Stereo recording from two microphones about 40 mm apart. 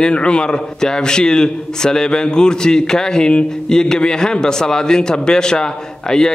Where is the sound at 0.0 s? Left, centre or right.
Left.